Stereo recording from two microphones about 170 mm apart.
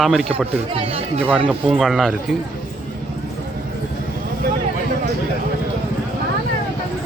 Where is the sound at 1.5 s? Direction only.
Centre (ahead or behind).